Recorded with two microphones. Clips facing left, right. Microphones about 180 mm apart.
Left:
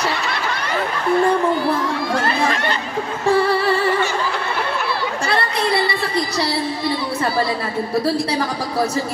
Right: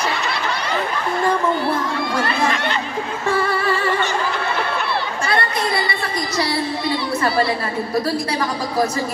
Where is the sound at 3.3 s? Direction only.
30° left (ahead or behind).